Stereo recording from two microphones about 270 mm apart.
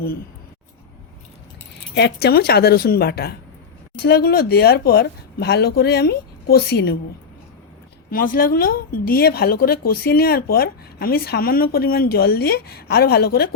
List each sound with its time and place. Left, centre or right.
2.0 s a woman's voice: left
8.1 s a woman's voice: left